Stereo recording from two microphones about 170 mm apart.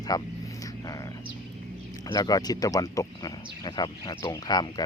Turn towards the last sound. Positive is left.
turn(degrees=25)  # may be behind; listen again after turning